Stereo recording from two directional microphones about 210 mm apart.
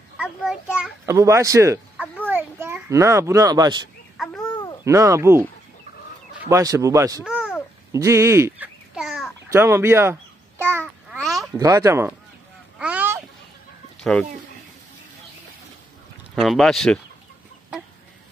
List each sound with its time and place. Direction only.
0.2 s a child's voice: 5° right (ahead or behind)
2.2 s children playing: 10° right (ahead or behind)
4.4 s a sound: 20° left (ahead or behind)
4.8 s speech: 15° right (ahead or behind)
6.5 s speech: 15° right (ahead or behind)
7.2 s a sound: 5° right (ahead or behind)
7.9 s babbling: 15° right (ahead or behind)
9.5 s speech: 10° right (ahead or behind)
10.6 s babbling: 10° right (ahead or behind)
11.1 s a sound: centre (ahead or behind)
11.5 s speech: 15° right (ahead or behind)
12.7 s a sound: 5° right (ahead or behind)
16.3 s speech: centre (ahead or behind)